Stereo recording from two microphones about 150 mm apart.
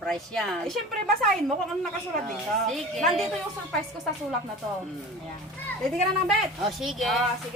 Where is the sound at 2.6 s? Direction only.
Centre (ahead or behind).